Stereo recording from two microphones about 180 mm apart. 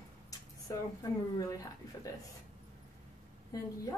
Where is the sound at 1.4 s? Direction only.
20° left (ahead or behind).